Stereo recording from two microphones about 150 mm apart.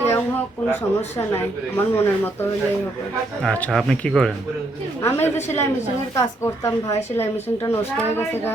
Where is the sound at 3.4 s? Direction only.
5° left (ahead or behind).